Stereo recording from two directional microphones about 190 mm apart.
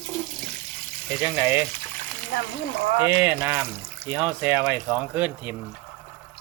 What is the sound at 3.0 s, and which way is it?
Speech, 10° right (ahead or behind).